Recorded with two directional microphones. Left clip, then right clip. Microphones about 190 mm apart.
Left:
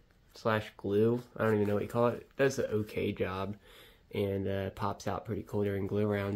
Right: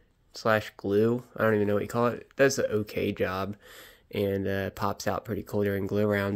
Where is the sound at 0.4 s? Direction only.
30° right (ahead or behind).